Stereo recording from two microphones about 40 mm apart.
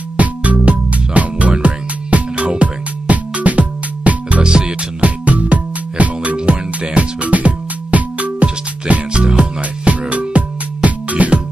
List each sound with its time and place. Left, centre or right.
0.2 s music: right
4.4 s music: right
5.0 s music: right
6.3 s music: right
9.1 s music: right
9.6 s music: right